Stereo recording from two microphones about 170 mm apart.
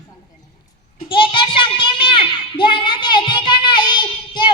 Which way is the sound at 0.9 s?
30° left (ahead or behind).